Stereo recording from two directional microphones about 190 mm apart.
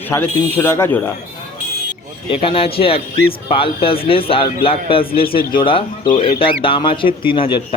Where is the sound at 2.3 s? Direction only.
30° left (ahead or behind).